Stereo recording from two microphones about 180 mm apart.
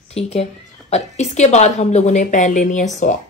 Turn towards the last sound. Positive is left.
turn(degrees=45)  # may be behind; listen again after turning